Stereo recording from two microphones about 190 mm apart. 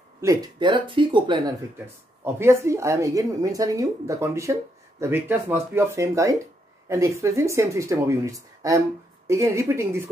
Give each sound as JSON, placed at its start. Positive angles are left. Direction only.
{"t": 0.2, "sound": "speech", "side_deg": -20}
{"t": 2.2, "sound": "a woman's voice", "side_deg": -10}